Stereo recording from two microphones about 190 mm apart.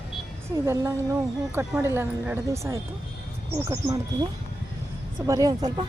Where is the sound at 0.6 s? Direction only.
15° right (ahead or behind).